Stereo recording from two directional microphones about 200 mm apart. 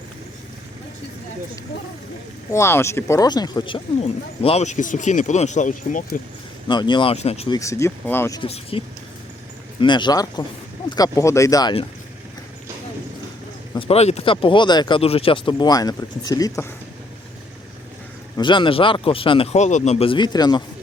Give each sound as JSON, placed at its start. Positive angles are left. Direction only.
{"t": 2.5, "sound": "speech", "side_deg": 15}
{"t": 4.0, "sound": "speech", "side_deg": 30}
{"t": 6.7, "sound": "speech", "side_deg": 20}
{"t": 7.5, "sound": "speech", "side_deg": 15}
{"t": 8.4, "sound": "speech", "side_deg": 30}
{"t": 9.8, "sound": "speech", "side_deg": 20}
{"t": 13.7, "sound": "speech", "side_deg": 30}
{"t": 18.3, "sound": "speech", "side_deg": 25}